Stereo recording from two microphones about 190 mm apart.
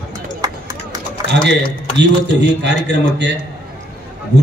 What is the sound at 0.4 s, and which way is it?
Run, 20° right (ahead or behind).